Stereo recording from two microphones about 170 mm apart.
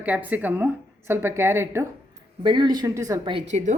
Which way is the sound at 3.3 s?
35° right (ahead or behind).